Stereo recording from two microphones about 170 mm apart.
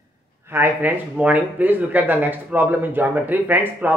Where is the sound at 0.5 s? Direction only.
10° right (ahead or behind).